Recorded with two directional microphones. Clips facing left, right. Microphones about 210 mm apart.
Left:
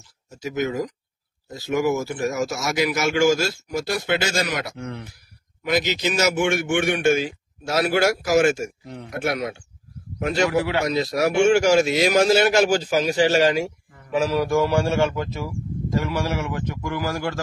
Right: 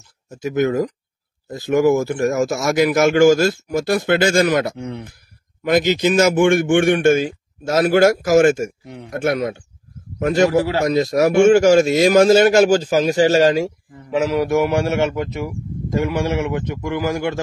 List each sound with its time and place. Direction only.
0.4 s a man's voice: 50° right (ahead or behind)
4.7 s a man's voice: 25° right (ahead or behind)
5.7 s a man's voice: 50° right (ahead or behind)
8.8 s speech: 15° right (ahead or behind)
9.1 s a man's voice: 50° right (ahead or behind)
14.1 s a man's voice: 25° right (ahead or behind)